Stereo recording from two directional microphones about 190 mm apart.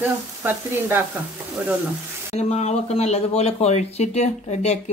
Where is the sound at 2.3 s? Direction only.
35° left (ahead or behind).